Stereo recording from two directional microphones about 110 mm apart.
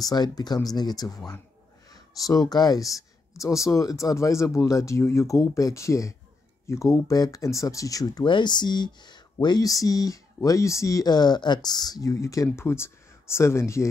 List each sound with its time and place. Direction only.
0.0 s speech: 40° left (ahead or behind)